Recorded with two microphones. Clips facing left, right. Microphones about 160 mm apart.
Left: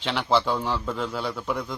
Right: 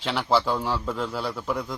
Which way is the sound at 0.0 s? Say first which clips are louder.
Even; 5° right (ahead or behind).